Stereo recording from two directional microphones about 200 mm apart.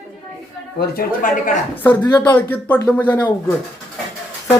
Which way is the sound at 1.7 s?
10° left (ahead or behind).